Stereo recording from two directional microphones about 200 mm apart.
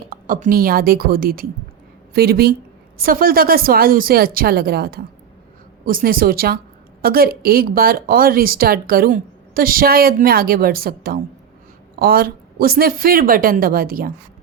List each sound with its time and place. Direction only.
0.1 s a woman's voice: 40° right (ahead or behind)